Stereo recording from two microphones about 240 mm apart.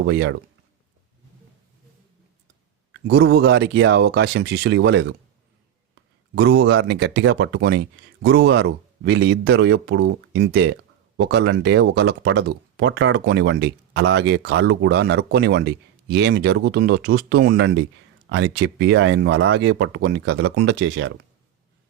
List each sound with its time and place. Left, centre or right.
0.0 s speech: right
3.1 s speech: right